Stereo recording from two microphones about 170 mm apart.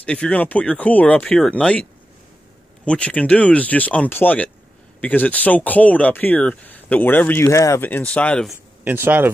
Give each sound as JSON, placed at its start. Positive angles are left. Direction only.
{"t": 0.0, "sound": "speech", "side_deg": 5}
{"t": 8.5, "sound": "speech", "side_deg": -10}